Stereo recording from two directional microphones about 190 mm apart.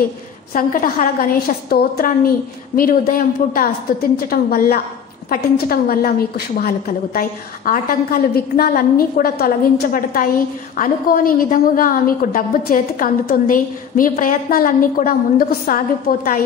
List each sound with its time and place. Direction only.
0.5 s a woman's voice: 45° left (ahead or behind)